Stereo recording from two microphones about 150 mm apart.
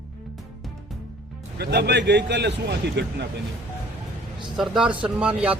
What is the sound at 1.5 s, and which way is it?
Speech, 90° right.